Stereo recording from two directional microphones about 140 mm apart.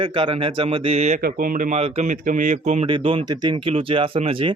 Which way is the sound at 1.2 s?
85° right.